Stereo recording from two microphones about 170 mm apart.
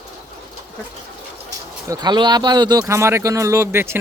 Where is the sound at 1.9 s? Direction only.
25° right (ahead or behind).